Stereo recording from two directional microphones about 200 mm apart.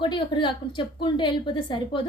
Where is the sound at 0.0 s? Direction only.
25° left (ahead or behind).